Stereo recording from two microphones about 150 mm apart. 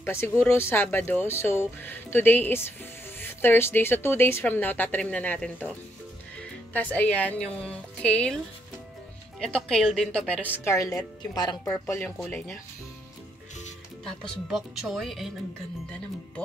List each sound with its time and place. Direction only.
0.0 s speech: 15° left (ahead or behind)
6.7 s speech: 10° left (ahead or behind)
9.4 s speech: 5° left (ahead or behind); by 11.8 s 25° left (ahead or behind)
11.8 s speech: 15° left (ahead or behind)
14.0 s speech: 5° left (ahead or behind)